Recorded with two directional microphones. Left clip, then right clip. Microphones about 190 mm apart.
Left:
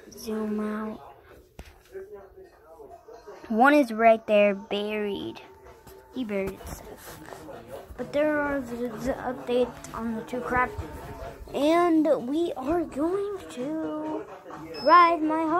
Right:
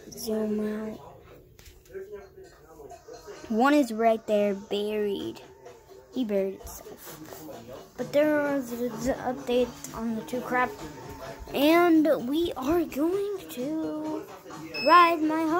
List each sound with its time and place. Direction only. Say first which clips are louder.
0.1 s speech: right 2 dB; centre (ahead or behind)
3.4 s a child's voice: left 3 dB; centre (ahead or behind)
7.1 s a sound: left 2 dB; 5° left (ahead or behind)
8.0 s speech: right 1 dB; 5° right (ahead or behind)
11.5 s a child's voice: right 1 dB; 10° right (ahead or behind)
12.5 s speech: right 1 dB; 25° right (ahead or behind)
12.9 s a child's voice: even; 10° right (ahead or behind)